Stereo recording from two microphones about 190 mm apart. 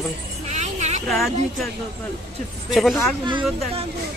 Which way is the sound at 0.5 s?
35° right (ahead or behind).